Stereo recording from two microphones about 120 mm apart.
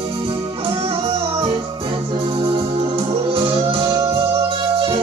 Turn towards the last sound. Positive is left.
turn(degrees=-45)  # may be behind; listen again after turning